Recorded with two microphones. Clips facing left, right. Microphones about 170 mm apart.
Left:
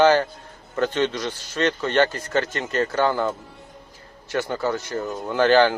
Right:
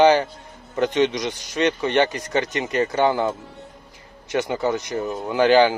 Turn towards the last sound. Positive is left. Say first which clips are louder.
# right 1 dB
turn(degrees=-15)  # may be behind; listen again after turning